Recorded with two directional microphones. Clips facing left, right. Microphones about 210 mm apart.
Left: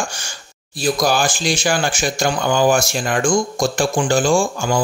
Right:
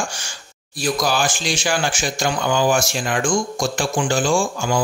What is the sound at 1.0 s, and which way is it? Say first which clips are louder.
Speech: left 4 dB; 40° left (ahead or behind).